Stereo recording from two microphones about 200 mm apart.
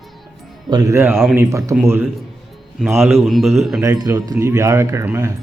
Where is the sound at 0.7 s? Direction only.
20° right (ahead or behind).